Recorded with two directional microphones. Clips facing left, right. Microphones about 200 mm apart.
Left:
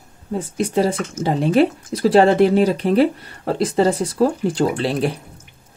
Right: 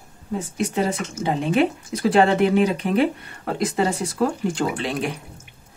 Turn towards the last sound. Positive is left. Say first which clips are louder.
# left 5 dB
turn(degrees=35)  # may be behind; listen again after turning